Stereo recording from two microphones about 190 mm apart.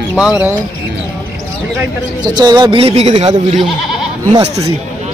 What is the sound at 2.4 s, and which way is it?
Speech, 25° right (ahead or behind).